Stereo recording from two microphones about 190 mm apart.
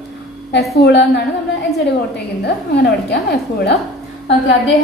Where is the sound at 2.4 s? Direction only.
60° left (ahead or behind).